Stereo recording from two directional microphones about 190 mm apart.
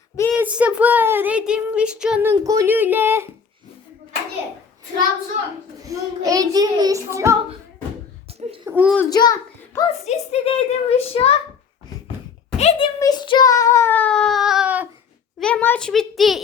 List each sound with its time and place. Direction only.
0.3 s speech: 5° right (ahead or behind)
2.3 s speech: 15° right (ahead or behind)
5.8 s speech: 15° right (ahead or behind)
8.3 s a sound: 30° right (ahead or behind)
8.6 s speech: 10° right (ahead or behind)
9.0 s a child's voice: 20° left (ahead or behind)
10.1 s a woman's voice: 35° left (ahead or behind)
12.5 s a sound: 30° left (ahead or behind)
13.0 s child singing: 20° left (ahead or behind); by 14.8 s 5° right (ahead or behind)
15.4 s a child's voice: 5° left (ahead or behind)